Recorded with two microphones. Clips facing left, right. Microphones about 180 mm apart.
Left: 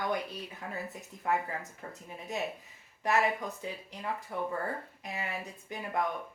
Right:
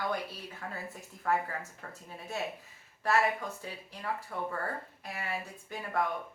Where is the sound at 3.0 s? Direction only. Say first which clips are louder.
Even; 15° left (ahead or behind).